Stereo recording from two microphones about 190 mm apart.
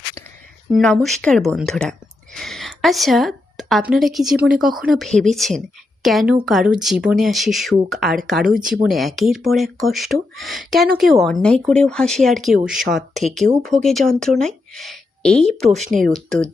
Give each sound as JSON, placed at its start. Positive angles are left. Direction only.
{"t": 0.7, "sound": "a woman's voice", "side_deg": 0}
{"t": 15.7, "sound": "speech", "side_deg": -40}
{"t": 16.0, "sound": "speech", "side_deg": 0}